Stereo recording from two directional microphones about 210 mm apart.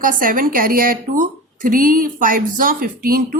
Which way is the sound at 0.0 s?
40° right (ahead or behind).